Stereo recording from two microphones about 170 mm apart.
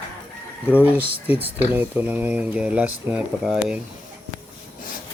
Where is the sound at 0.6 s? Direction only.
10° right (ahead or behind).